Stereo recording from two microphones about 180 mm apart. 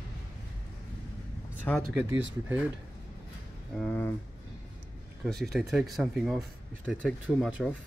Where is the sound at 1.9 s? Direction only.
10° right (ahead or behind).